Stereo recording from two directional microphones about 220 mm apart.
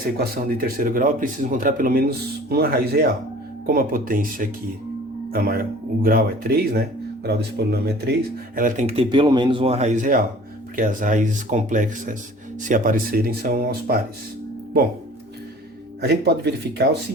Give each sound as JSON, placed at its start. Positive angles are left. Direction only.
{"t": 0.2, "sound": "speech", "side_deg": -40}
{"t": 8.5, "sound": "speech", "side_deg": -35}
{"t": 16.0, "sound": "speech", "side_deg": -50}